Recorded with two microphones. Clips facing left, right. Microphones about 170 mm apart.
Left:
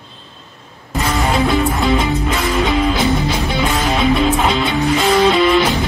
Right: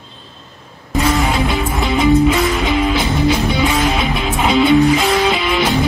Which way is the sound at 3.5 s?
Centre (ahead or behind).